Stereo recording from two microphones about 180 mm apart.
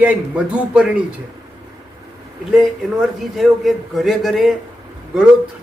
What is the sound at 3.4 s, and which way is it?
A man's voice, centre (ahead or behind).